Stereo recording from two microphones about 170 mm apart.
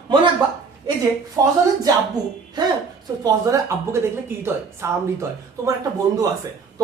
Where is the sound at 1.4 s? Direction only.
15° right (ahead or behind).